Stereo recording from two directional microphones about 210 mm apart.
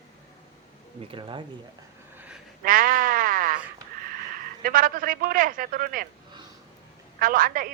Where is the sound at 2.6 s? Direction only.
40° right (ahead or behind).